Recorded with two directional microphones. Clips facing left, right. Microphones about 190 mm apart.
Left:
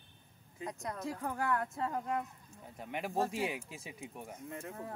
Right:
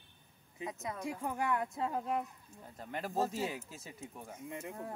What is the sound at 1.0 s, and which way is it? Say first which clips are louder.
Speech: even; 15° right (ahead or behind).